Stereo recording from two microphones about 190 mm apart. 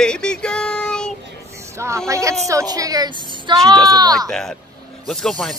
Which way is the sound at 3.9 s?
20° right (ahead or behind).